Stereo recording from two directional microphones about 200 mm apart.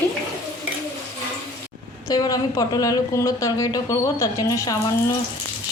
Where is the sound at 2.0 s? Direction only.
20° left (ahead or behind).